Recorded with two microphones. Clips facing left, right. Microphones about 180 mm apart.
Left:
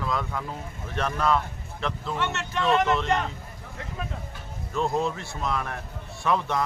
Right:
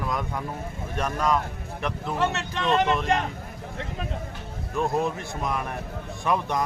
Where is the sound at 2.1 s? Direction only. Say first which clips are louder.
Right 4 dB; 35° right (ahead or behind).